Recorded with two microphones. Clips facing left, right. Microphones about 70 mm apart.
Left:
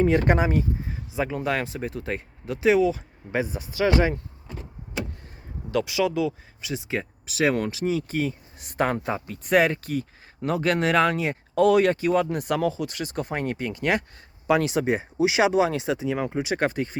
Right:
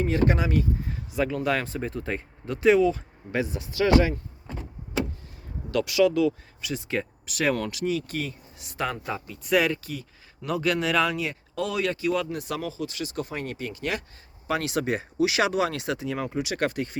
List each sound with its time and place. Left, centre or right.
0.0 s speech: left
1.1 s speech: centre
5.7 s speech: centre
8.5 s speech: left
14.7 s speech: left